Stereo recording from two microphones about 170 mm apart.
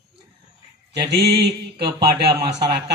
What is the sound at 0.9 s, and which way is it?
Speech, 80° right.